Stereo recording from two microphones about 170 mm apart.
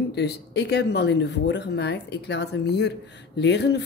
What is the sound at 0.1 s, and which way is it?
Speech, 80° left.